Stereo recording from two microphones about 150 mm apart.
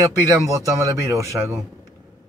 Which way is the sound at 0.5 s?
20° right (ahead or behind).